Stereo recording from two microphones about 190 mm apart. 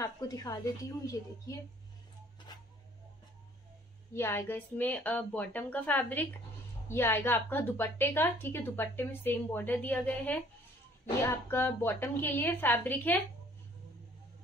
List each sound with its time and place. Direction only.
0.0 s a woman's voice: 20° left (ahead or behind)
2.5 s a sound: 25° left (ahead or behind)
4.1 s a woman's voice: 15° left (ahead or behind)